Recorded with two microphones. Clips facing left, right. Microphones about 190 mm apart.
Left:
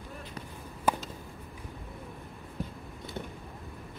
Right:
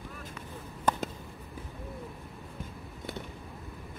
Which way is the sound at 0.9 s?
10° left (ahead or behind).